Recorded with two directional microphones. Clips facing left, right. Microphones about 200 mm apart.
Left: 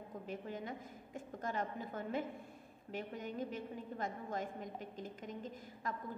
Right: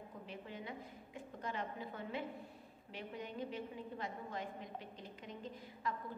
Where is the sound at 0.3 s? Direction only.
45° left (ahead or behind).